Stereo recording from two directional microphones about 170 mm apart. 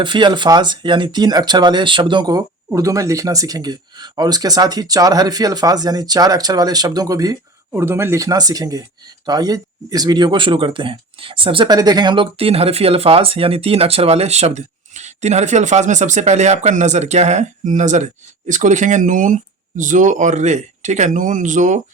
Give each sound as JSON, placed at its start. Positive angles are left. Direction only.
{"t": 0.0, "sound": "speech", "side_deg": -25}